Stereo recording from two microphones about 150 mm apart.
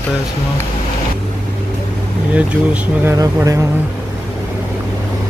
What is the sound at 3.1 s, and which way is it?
Speech, 20° right (ahead or behind).